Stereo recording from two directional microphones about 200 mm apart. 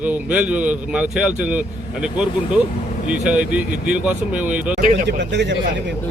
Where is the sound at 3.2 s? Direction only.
5° right (ahead or behind).